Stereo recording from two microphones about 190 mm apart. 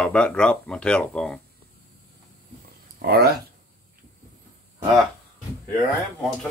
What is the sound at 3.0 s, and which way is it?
Speech, 55° right (ahead or behind).